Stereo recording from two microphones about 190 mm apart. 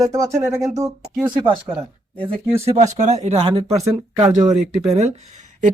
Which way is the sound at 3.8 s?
20° right (ahead or behind).